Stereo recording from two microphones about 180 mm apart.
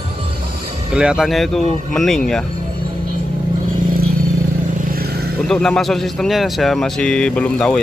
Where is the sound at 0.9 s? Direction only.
5° right (ahead or behind).